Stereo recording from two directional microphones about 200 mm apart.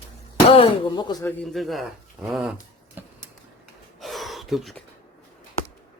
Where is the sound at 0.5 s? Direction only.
25° left (ahead or behind).